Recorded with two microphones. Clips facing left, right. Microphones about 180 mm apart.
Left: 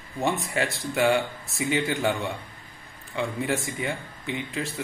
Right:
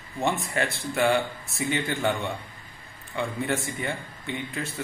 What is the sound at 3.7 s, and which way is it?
Speech, 15° left (ahead or behind).